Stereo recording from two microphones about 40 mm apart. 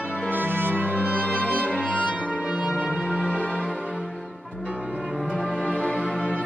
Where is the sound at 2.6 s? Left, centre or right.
Right.